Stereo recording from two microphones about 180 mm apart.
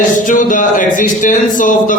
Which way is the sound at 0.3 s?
45° left (ahead or behind).